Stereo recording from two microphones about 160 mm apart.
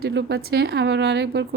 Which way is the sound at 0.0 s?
90° right.